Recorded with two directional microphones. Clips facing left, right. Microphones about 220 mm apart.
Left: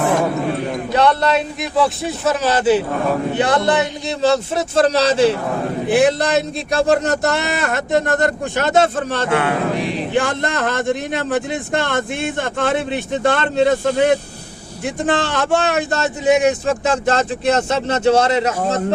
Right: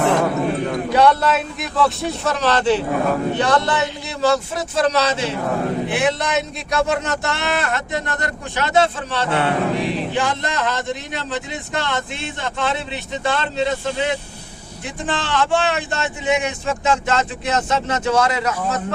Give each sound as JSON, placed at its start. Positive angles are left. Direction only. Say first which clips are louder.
{"t": 0.9, "sound": "a man's voice", "louder": "even", "side_deg": -10}
{"t": 1.8, "sound": "a man's voice", "louder": "left 1 dB", "side_deg": 5}